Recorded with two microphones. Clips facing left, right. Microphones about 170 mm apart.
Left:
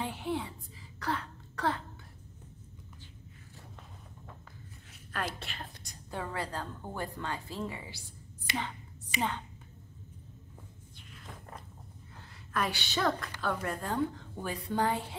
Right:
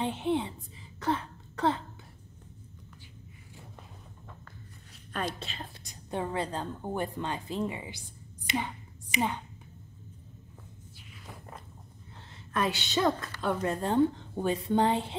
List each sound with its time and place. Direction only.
0.0 s a sound: 20° right (ahead or behind)
5.5 s a sound: 60° left (ahead or behind)
6.0 s a woman's voice: 20° right (ahead or behind)
8.5 s whispering: 15° right (ahead or behind)
11.1 s walk: centre (ahead or behind)
12.7 s a woman's voice: 20° right (ahead or behind)